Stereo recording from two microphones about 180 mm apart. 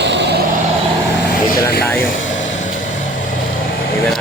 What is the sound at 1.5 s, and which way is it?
Vehicle, 55° left (ahead or behind).